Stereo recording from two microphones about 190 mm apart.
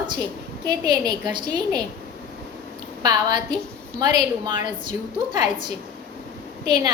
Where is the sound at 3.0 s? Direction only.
20° right (ahead or behind).